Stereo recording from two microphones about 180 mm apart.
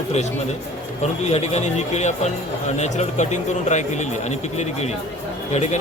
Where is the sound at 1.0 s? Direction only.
40° left (ahead or behind).